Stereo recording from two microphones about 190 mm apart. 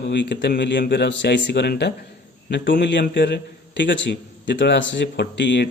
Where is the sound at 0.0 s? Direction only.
65° left (ahead or behind).